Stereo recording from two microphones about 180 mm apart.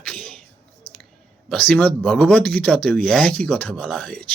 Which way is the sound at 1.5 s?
5° left (ahead or behind).